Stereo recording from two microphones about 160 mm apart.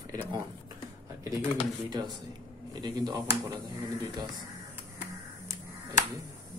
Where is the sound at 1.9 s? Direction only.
25° right (ahead or behind).